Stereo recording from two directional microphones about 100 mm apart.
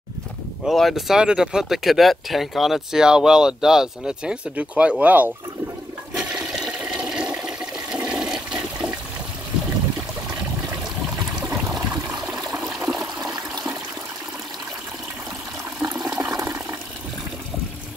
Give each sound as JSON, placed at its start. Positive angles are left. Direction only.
{"t": 0.7, "sound": "speech", "side_deg": 0}
{"t": 6.1, "sound": "toilet flush", "side_deg": -5}
{"t": 11.4, "sound": "water", "side_deg": -25}
{"t": 11.7, "sound": "water", "side_deg": -40}
{"t": 13.0, "sound": "toilet flush", "side_deg": -40}
{"t": 15.8, "sound": "water", "side_deg": -35}